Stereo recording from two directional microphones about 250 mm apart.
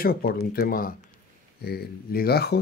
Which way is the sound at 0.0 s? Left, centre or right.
Left.